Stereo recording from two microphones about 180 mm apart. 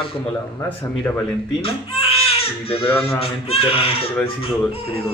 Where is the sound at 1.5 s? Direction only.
30° left (ahead or behind).